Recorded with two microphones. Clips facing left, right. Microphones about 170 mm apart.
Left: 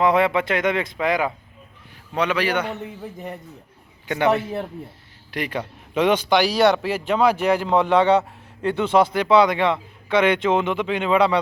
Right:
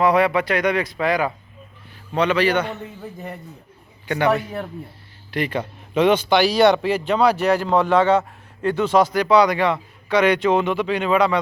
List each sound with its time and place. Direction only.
0.0 s speech: 20° left (ahead or behind)
4.0 s speech: 20° left (ahead or behind)
5.3 s a man's voice: 10° left (ahead or behind)